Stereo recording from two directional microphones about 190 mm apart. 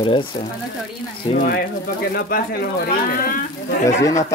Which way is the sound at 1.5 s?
55° left (ahead or behind).